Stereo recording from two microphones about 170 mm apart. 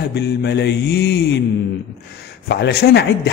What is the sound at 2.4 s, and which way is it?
Speech, 75° left (ahead or behind).